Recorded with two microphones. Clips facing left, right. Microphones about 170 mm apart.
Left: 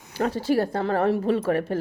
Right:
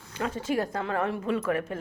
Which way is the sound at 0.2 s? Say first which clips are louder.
Left 6 dB; 35° left (ahead or behind).